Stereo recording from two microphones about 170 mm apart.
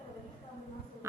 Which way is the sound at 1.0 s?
15° right (ahead or behind).